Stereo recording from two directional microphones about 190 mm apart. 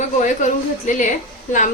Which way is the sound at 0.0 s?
40° left (ahead or behind).